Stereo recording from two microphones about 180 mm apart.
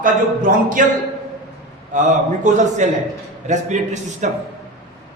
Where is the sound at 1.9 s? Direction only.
45° right (ahead or behind).